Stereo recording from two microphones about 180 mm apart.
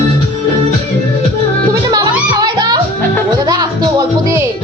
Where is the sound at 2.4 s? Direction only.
20° right (ahead or behind).